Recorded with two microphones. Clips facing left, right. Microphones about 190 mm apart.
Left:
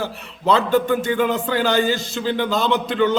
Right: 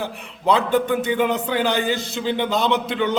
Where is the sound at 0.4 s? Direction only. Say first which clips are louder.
Left 1 dB; 15° right (ahead or behind).